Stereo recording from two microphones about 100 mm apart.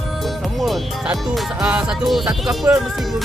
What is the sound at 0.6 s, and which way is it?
Music, 5° right (ahead or behind).